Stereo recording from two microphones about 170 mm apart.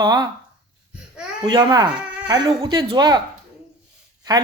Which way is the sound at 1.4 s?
25° right (ahead or behind).